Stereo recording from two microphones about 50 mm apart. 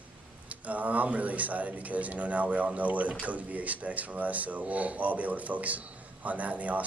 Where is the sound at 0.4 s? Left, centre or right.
Right.